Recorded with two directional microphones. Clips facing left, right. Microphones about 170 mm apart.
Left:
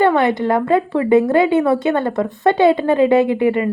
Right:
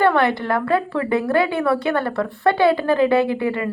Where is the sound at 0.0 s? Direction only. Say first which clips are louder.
Left 3 dB; 20° left (ahead or behind).